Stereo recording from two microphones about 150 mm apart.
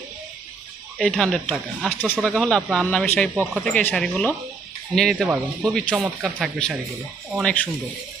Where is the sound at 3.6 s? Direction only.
5° left (ahead or behind).